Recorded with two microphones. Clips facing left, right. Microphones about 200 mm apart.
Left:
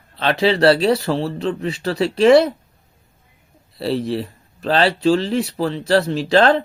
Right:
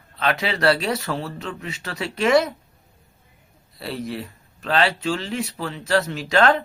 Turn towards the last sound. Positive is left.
turn(degrees=30)  # may be behind; listen again after turning